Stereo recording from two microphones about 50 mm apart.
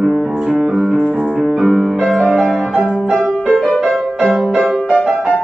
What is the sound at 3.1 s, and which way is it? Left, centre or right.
Music, centre.